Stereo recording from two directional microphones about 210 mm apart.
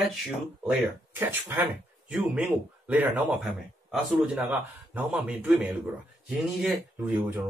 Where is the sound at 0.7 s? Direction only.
10° right (ahead or behind).